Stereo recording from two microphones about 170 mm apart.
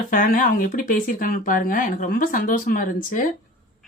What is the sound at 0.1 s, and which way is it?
Speech, 55° left (ahead or behind).